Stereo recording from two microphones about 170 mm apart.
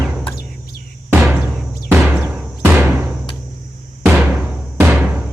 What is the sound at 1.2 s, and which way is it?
Music, 15° right (ahead or behind).